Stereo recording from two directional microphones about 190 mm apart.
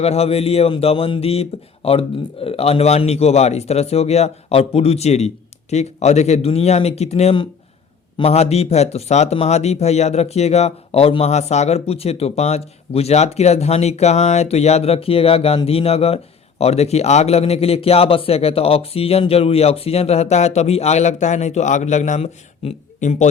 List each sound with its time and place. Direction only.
0.0 s speech: 35° left (ahead or behind)